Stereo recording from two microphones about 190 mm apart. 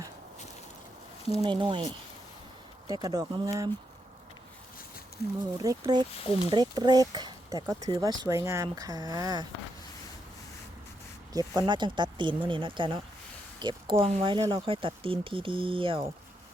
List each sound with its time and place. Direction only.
1.4 s speech: 25° right (ahead or behind)
5.4 s speech: 20° right (ahead or behind)
11.3 s speech: 25° right (ahead or behind)